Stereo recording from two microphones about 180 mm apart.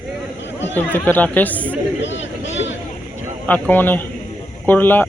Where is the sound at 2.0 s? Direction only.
90° left.